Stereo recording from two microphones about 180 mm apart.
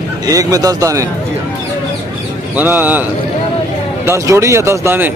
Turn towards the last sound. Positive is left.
turn(degrees=-15)  # may be behind; listen again after turning